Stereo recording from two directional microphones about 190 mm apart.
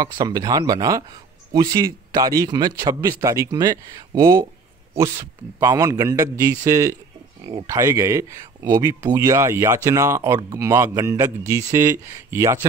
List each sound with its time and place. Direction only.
0.0 s a man's voice: 20° right (ahead or behind)